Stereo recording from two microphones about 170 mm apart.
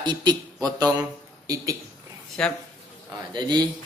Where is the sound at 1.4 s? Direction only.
20° right (ahead or behind).